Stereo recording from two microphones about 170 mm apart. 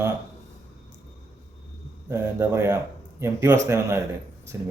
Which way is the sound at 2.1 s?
15° right (ahead or behind).